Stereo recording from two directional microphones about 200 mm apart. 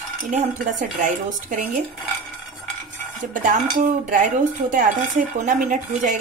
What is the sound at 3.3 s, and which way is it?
Speech, 40° right (ahead or behind).